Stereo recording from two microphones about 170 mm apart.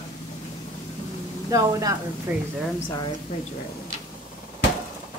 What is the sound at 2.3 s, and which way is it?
Speech, 10° right (ahead or behind).